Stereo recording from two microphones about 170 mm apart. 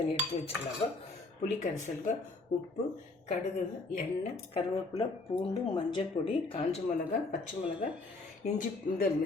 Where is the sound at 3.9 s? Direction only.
40° left (ahead or behind).